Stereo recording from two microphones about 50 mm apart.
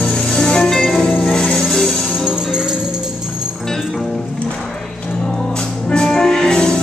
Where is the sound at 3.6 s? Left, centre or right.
Centre.